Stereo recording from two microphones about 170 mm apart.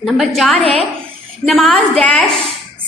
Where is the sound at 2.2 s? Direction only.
35° right (ahead or behind).